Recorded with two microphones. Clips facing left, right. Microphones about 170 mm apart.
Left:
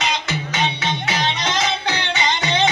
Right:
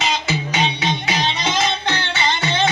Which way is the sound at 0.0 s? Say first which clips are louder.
Right 2 dB; 5° right (ahead or behind).